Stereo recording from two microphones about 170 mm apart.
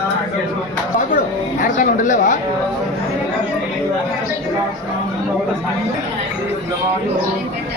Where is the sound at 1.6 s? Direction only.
50° left (ahead or behind).